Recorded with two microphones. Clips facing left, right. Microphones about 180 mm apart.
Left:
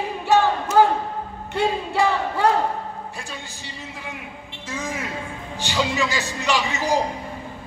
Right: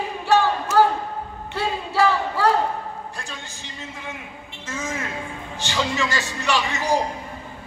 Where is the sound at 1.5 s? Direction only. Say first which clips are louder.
Left 3 dB; 20° left (ahead or behind).